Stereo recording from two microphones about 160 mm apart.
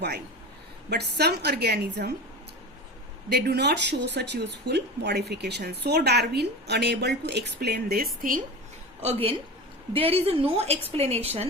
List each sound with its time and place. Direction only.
0.9 s speech: 90° right
3.2 s speech: 90° right; by 8.4 s 65° right (ahead or behind)
9.9 s a woman's voice: 35° right (ahead or behind)